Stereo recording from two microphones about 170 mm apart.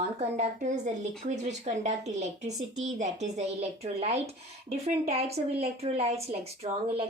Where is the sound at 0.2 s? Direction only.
40° right (ahead or behind).